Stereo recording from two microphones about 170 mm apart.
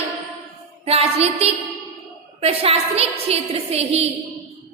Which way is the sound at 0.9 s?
35° right (ahead or behind).